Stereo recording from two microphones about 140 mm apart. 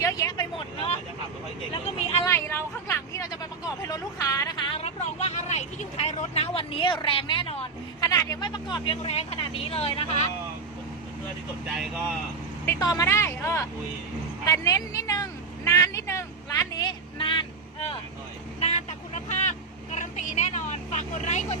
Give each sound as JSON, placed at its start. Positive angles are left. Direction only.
{"t": 0.0, "sound": "vehicle", "side_deg": 25}
{"t": 2.2, "sound": "hubbub", "side_deg": 15}
{"t": 8.0, "sound": "speech", "side_deg": 25}
{"t": 9.0, "sound": "speech", "side_deg": 45}
{"t": 11.6, "sound": "speech", "side_deg": -10}
{"t": 12.6, "sound": "speech", "side_deg": 25}
{"t": 14.4, "sound": "vehicle", "side_deg": 25}
{"t": 18.6, "sound": "vehicle", "side_deg": 55}